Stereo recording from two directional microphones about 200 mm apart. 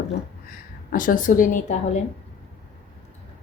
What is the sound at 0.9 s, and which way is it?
Speech, 45° left (ahead or behind).